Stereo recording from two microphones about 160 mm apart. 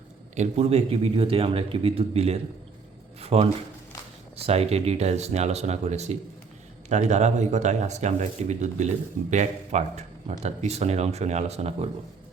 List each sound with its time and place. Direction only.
0.3 s a man's voice: 40° right (ahead or behind)